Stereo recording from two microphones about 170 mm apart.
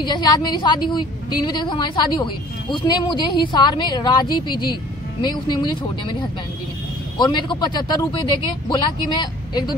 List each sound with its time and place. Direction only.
0.0 s a woman's voice: 25° left (ahead or behind)
7.2 s a woman's voice: 25° left (ahead or behind)